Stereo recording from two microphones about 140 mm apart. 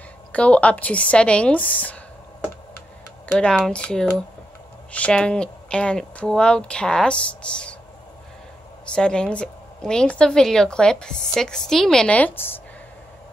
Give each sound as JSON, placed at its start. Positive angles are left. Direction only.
{"t": 0.3, "sound": "speech", "side_deg": 10}
{"t": 3.3, "sound": "speech", "side_deg": 5}
{"t": 8.8, "sound": "a woman's voice", "side_deg": 5}